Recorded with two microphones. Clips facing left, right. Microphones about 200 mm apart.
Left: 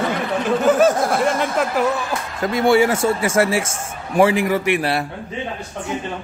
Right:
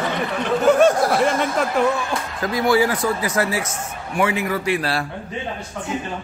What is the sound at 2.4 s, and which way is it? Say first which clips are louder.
A man's voice: left 3 dB; 25° left (ahead or behind).